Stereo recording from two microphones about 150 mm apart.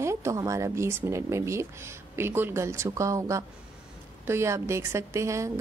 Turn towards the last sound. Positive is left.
turn(degrees=-20)  # may be behind; listen again after turning